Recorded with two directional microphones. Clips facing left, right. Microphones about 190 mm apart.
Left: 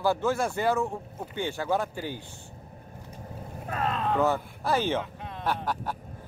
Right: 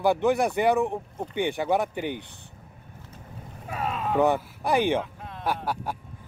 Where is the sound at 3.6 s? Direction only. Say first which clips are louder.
Left 1 dB; 5° right (ahead or behind).